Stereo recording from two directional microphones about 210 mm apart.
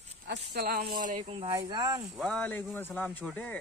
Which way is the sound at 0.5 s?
50° right (ahead or behind).